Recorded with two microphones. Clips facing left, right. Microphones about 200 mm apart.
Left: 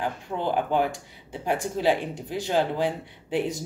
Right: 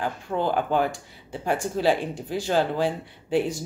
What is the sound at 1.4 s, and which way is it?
Speech, 15° left (ahead or behind).